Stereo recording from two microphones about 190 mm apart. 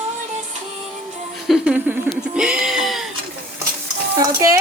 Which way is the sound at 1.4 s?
5° right (ahead or behind).